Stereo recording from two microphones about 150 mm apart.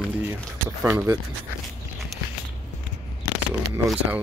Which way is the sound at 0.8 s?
15° right (ahead or behind).